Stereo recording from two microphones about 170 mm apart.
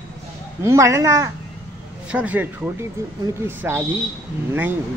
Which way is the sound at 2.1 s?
10° right (ahead or behind).